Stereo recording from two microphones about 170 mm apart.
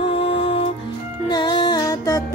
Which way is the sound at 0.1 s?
35° left (ahead or behind).